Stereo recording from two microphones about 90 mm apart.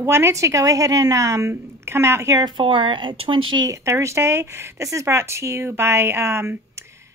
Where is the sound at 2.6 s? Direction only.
70° right (ahead or behind).